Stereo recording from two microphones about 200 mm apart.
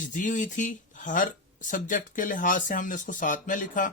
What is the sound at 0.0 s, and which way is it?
Speech, 40° left (ahead or behind).